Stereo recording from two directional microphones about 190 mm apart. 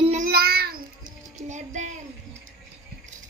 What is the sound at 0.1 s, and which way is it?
Music, 50° right (ahead or behind).